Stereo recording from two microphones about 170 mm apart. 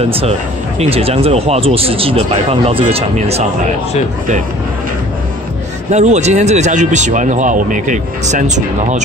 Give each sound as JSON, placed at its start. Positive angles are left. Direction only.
{"t": 0.0, "sound": "speech", "side_deg": -35}
{"t": 5.9, "sound": "speech", "side_deg": -40}